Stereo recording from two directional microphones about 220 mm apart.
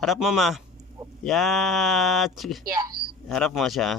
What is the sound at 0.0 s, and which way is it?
Speech, centre (ahead or behind).